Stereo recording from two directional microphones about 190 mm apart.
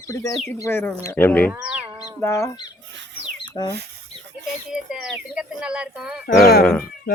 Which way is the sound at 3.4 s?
25° left (ahead or behind).